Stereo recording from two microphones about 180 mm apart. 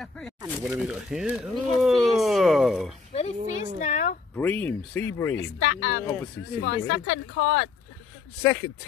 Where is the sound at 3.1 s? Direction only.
40° left (ahead or behind).